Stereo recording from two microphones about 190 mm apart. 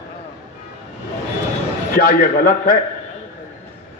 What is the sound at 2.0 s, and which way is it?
Speech, 50° left (ahead or behind).